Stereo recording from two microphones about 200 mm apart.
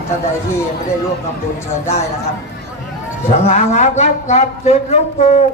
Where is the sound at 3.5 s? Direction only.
35° left (ahead or behind).